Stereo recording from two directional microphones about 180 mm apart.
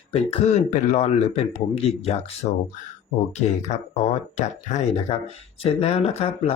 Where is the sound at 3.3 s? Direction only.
40° left (ahead or behind).